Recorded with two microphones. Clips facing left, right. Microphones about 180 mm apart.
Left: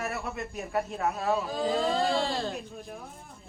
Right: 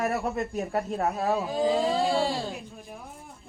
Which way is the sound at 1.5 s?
10° right (ahead or behind).